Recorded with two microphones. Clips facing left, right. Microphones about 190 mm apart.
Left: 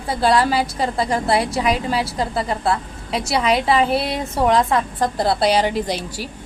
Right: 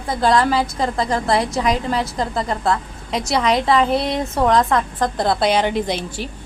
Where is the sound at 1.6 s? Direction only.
10° left (ahead or behind).